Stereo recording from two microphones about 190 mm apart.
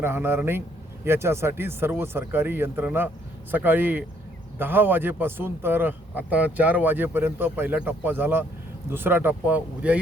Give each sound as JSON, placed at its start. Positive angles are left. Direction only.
{"t": 0.0, "sound": "a man's voice", "side_deg": -10}